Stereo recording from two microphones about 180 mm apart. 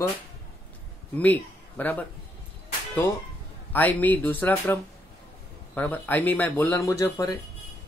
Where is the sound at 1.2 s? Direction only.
10° left (ahead or behind).